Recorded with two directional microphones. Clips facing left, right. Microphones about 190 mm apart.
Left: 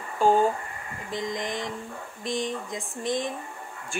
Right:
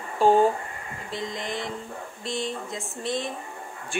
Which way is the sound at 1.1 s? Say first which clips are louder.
Left 2 dB; 15° left (ahead or behind).